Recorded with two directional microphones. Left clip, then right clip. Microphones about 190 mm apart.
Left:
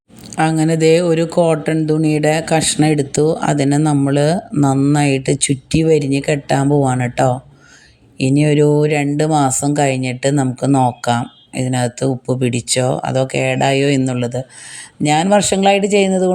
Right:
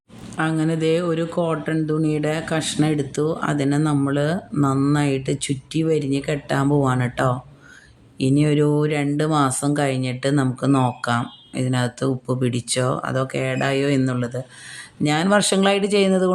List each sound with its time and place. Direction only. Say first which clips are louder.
0.3 s speech: left 7 dB; 25° left (ahead or behind); by 16.3 s 10° left (ahead or behind)